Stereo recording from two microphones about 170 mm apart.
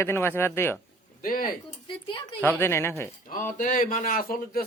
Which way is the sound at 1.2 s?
55° left (ahead or behind).